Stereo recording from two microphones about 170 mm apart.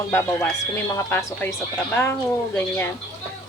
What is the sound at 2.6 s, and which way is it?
Speech, 10° left (ahead or behind).